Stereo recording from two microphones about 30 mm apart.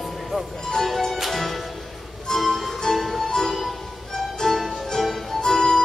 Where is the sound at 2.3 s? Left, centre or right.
Left.